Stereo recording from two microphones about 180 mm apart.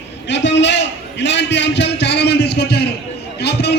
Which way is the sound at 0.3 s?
75° left (ahead or behind).